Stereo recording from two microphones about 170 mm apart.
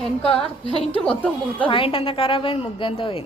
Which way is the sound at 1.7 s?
30° left (ahead or behind).